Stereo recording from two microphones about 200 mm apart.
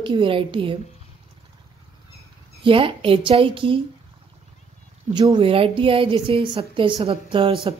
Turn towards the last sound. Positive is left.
turn(degrees=-25)  # may be behind; listen again after turning